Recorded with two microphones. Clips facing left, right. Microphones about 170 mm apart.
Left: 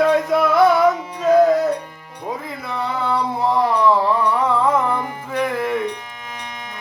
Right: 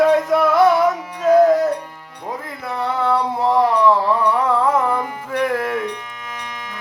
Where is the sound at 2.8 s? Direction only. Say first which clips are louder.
Right 3 dB; centre (ahead or behind).